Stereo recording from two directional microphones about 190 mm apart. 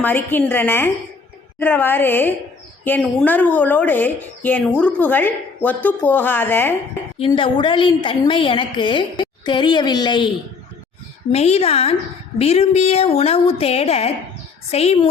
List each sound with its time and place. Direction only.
0.0 s a woman's voice: 10° left (ahead or behind)
7.2 s a woman's voice: 30° left (ahead or behind)
11.3 s speech: 35° left (ahead or behind)